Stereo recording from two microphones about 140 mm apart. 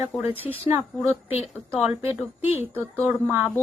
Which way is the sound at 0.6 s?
15° right (ahead or behind).